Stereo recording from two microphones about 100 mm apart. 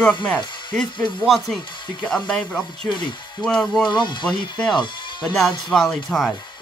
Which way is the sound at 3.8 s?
50° left (ahead or behind).